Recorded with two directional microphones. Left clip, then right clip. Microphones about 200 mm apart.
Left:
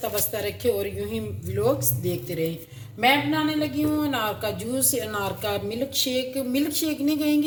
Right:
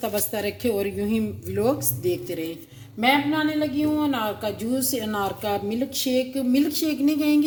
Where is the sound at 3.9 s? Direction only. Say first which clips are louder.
Right 1 dB; 30° right (ahead or behind).